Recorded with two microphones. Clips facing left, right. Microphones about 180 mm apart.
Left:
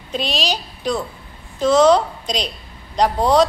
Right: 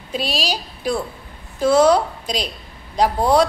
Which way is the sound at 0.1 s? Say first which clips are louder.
Left 1 dB; 5° right (ahead or behind).